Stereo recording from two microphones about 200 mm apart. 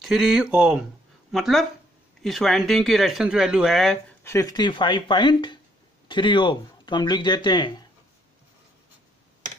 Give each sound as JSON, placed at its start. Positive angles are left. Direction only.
{"t": 0.0, "sound": "speech", "side_deg": 0}
{"t": 4.2, "sound": "speech", "side_deg": 15}